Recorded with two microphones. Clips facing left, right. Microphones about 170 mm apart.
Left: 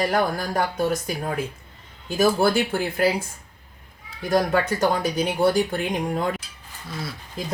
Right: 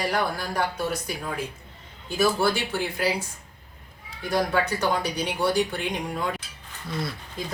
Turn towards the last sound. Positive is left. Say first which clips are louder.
# right 1 dB
turn(degrees=0)  # may be behind; listen again after turning